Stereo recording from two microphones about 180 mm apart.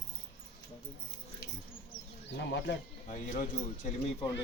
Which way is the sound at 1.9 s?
80° left.